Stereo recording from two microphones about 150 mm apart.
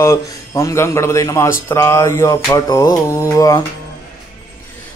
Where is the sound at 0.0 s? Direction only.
20° left (ahead or behind).